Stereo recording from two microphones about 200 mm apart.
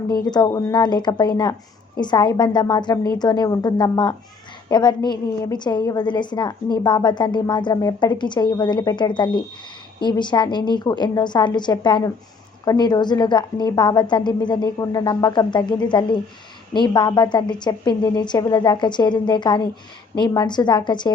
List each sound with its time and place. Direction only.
0.3 s a woman's voice: 20° left (ahead or behind)